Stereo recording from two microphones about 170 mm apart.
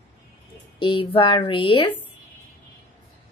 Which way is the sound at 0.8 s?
30° left (ahead or behind).